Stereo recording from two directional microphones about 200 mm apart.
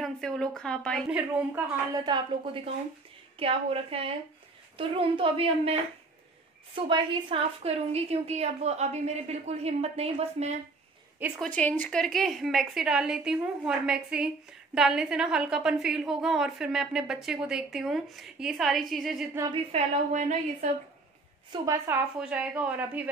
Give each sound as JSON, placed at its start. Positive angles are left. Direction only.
{"t": 0.0, "sound": "a woman's voice", "side_deg": 0}
{"t": 2.0, "sound": "a woman's voice", "side_deg": -25}
{"t": 11.1, "sound": "a woman's voice", "side_deg": -10}
{"t": 11.4, "sound": "a woman's voice", "side_deg": 5}
{"t": 19.5, "sound": "a woman's voice", "side_deg": -35}
{"t": 21.5, "sound": "a woman's voice", "side_deg": -15}